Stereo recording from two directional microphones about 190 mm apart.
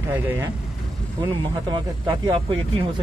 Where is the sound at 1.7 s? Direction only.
25° right (ahead or behind).